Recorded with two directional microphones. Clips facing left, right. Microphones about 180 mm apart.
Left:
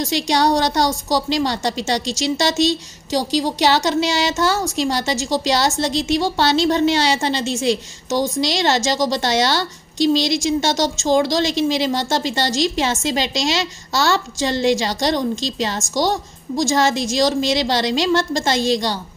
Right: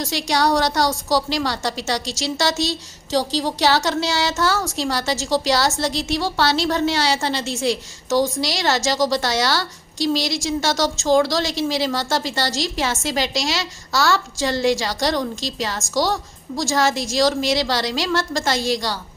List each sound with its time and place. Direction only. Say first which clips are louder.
0.0 s a woman's voice: left 3 dB; 20° left (ahead or behind)